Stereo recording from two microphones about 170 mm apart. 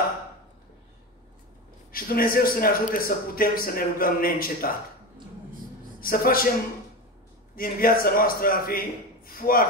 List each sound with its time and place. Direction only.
1.9 s a man's voice: 60° left (ahead or behind)
5.9 s a man's voice: 60° left (ahead or behind)
7.5 s a man's voice: 60° left (ahead or behind)